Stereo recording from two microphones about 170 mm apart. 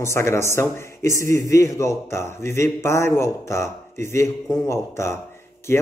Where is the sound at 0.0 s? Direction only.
15° left (ahead or behind).